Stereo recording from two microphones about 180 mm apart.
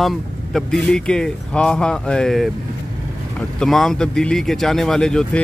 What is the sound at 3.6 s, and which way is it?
Speech, centre (ahead or behind).